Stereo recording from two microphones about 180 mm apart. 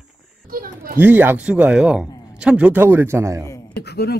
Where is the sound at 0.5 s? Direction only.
50° right (ahead or behind).